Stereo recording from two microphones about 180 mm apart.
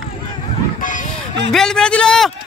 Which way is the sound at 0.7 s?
50° left (ahead or behind).